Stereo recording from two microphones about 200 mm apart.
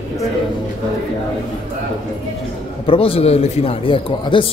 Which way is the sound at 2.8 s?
25° left (ahead or behind).